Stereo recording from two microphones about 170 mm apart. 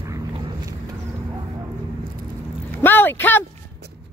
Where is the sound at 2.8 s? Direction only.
10° left (ahead or behind).